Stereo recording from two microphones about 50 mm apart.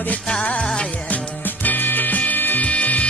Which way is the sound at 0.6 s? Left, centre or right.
Centre.